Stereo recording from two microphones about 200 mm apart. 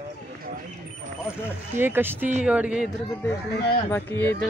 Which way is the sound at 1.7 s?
10° right (ahead or behind).